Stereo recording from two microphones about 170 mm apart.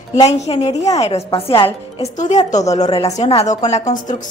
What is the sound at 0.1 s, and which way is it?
A woman's voice, 40° left (ahead or behind).